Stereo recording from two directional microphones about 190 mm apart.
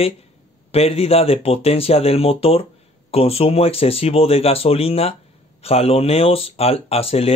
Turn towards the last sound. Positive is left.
turn(degrees=30)  # may be behind; listen again after turning